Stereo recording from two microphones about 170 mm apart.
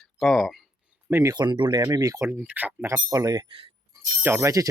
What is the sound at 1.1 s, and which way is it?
Speech, 20° right (ahead or behind).